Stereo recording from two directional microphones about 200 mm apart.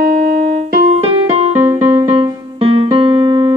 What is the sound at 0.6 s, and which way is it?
Music, 35° right (ahead or behind).